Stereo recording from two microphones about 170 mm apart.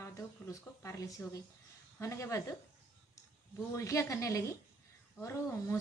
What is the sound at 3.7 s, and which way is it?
Speech, 20° left (ahead or behind).